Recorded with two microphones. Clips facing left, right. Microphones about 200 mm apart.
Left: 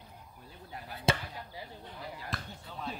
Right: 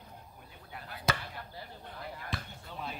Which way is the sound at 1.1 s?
30° left (ahead or behind).